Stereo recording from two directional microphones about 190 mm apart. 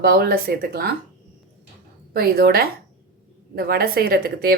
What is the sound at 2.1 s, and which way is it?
Speech, 50° right (ahead or behind).